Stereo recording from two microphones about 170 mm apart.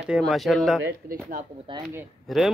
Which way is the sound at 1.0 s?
55° right (ahead or behind).